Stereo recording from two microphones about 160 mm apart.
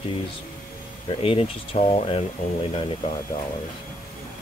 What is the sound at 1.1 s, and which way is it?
Speech, 35° left (ahead or behind).